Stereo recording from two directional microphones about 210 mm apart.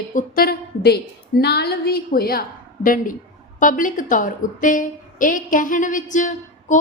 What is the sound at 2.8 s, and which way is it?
A woman's voice, 40° left (ahead or behind).